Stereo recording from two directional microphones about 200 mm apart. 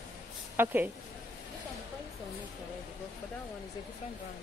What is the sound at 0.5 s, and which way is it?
Speech, 10° right (ahead or behind).